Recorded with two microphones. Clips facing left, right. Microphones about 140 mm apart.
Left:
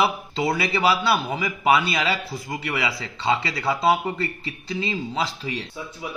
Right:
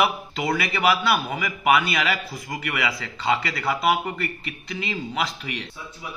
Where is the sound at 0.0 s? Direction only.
25° left (ahead or behind).